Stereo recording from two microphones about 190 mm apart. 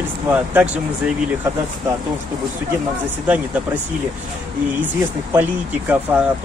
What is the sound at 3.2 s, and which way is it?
Speech, 10° right (ahead or behind).